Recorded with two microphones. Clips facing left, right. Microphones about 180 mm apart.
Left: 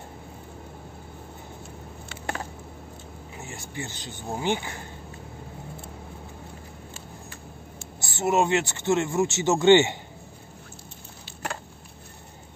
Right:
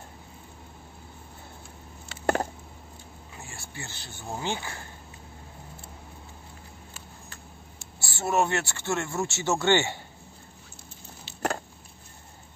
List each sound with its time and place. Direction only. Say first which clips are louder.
2.0 s a sound: right 8 dB; 45° right (ahead or behind)
3.4 s speech: left 7 dB; 20° left (ahead or behind)
8.0 s speech: left 3 dB; 20° left (ahead or behind)